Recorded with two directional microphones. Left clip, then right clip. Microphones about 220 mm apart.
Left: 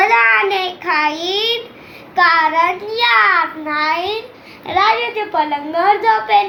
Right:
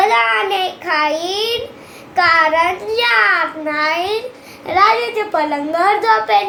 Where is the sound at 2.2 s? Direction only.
10° right (ahead or behind).